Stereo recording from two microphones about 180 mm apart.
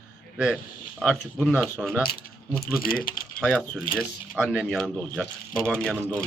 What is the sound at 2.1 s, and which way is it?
Speech, 60° left (ahead or behind).